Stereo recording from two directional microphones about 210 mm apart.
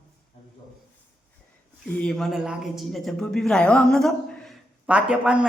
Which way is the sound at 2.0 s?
5° left (ahead or behind).